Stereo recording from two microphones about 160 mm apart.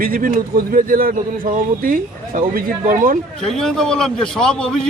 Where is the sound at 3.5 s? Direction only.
Centre (ahead or behind).